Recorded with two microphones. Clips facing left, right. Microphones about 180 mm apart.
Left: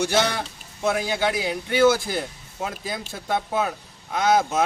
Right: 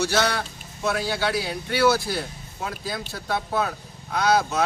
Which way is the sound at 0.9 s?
20° left (ahead or behind).